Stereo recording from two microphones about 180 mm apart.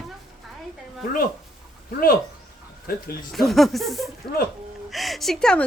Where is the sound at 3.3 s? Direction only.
Centre (ahead or behind).